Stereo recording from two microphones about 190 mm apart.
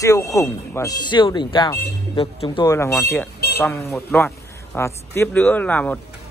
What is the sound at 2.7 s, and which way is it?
Speech, 15° left (ahead or behind).